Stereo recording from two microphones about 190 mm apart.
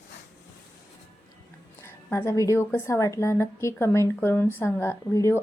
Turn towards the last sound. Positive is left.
turn(degrees=15)  # may be behind; listen again after turning